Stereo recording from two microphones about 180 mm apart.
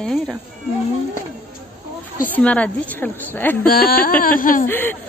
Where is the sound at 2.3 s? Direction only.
5° left (ahead or behind).